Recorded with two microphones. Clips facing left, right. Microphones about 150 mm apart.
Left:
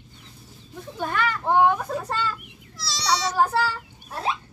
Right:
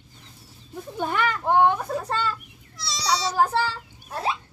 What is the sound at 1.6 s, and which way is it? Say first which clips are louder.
Speech: even; centre (ahead or behind).